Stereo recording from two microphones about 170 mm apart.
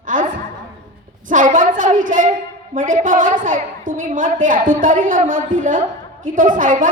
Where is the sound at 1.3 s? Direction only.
50° right (ahead or behind).